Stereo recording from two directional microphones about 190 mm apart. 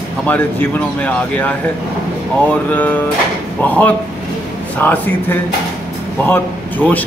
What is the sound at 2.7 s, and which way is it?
Speech, 10° left (ahead or behind).